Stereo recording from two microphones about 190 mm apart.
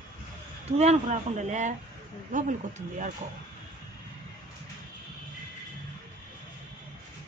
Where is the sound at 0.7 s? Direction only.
35° right (ahead or behind).